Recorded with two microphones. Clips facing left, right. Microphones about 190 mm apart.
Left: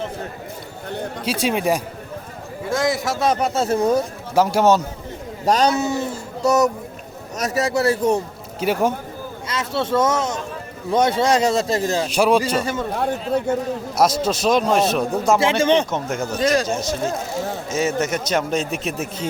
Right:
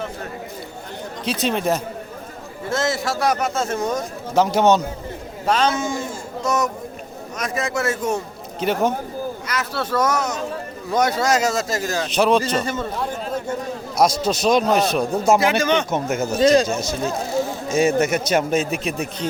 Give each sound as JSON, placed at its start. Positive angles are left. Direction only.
{"t": 1.2, "sound": "a man's voice", "side_deg": 10}
{"t": 4.4, "sound": "speech", "side_deg": 5}
{"t": 5.5, "sound": "a man's voice", "side_deg": 40}
{"t": 8.6, "sound": "a man's voice", "side_deg": 5}
{"t": 9.5, "sound": "a man's voice", "side_deg": 25}
{"t": 12.0, "sound": "a man's voice", "side_deg": 10}
{"t": 14.3, "sound": "speech", "side_deg": 5}
{"t": 15.4, "sound": "a man's voice", "side_deg": 25}
{"t": 15.9, "sound": "speech", "side_deg": -5}
{"t": 16.4, "sound": "speech", "side_deg": -25}
{"t": 17.7, "sound": "a man's voice", "side_deg": -15}